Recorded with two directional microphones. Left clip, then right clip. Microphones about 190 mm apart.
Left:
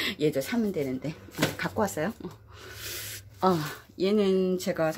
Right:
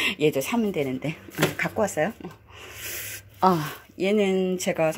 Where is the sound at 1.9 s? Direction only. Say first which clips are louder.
Right 6 dB; 20° left (ahead or behind).